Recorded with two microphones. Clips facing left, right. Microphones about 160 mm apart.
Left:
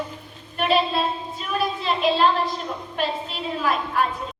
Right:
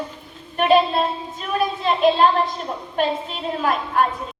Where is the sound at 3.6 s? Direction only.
50° right (ahead or behind).